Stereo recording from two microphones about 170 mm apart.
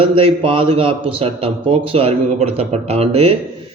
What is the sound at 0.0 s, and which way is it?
A man's voice, 30° right (ahead or behind).